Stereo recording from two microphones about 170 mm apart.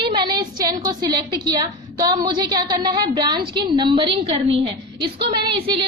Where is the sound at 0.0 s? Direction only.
25° right (ahead or behind).